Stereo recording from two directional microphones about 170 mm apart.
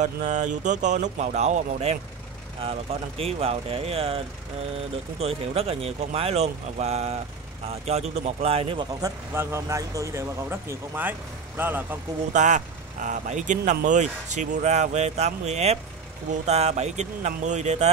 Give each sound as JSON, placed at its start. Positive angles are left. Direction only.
{"t": 0.0, "sound": "speech", "side_deg": -45}
{"t": 5.2, "sound": "speech", "side_deg": -35}
{"t": 9.3, "sound": "speech", "side_deg": -15}
{"t": 12.3, "sound": "speech", "side_deg": -45}